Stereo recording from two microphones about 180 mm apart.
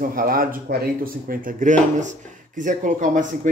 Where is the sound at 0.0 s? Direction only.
50° right (ahead or behind).